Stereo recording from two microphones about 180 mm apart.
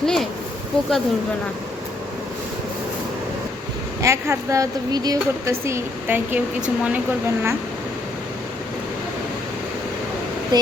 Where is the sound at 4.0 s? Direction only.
15° right (ahead or behind).